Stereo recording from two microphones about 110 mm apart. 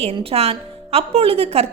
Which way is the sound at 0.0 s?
60° right (ahead or behind).